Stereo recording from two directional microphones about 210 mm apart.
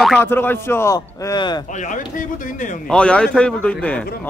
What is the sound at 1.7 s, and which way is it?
A man's voice, 35° left (ahead or behind).